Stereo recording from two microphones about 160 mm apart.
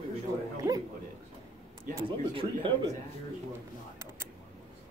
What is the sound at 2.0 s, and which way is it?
Speech, 30° right (ahead or behind).